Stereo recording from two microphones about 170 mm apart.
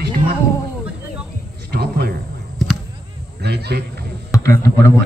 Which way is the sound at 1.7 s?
70° right (ahead or behind).